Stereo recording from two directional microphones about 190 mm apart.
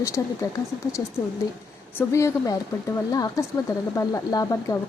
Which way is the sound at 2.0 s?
15° left (ahead or behind).